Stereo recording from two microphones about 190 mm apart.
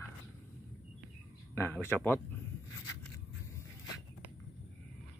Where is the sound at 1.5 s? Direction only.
10° left (ahead or behind).